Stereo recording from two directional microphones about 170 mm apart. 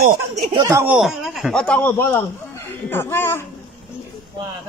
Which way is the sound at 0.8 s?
5° right (ahead or behind).